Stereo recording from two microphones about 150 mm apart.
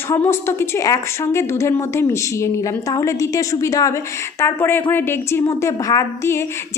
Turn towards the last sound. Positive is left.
turn(degrees=20)  # may be behind; listen again after turning